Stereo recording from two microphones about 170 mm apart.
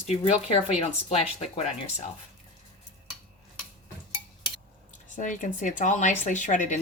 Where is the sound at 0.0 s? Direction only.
40° left (ahead or behind).